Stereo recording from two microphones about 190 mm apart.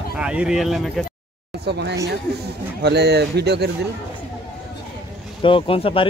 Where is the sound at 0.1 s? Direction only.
5° right (ahead or behind).